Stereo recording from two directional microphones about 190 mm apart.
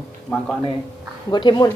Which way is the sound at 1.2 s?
25° left (ahead or behind).